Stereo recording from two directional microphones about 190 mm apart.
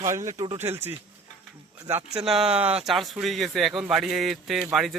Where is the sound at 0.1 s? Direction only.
15° right (ahead or behind).